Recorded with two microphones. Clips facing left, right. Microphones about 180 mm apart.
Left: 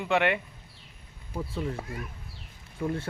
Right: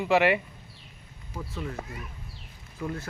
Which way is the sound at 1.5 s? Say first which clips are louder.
Left 3 dB; 30° left (ahead or behind).